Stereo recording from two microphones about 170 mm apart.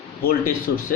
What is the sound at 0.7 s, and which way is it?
Speech, 65° left (ahead or behind).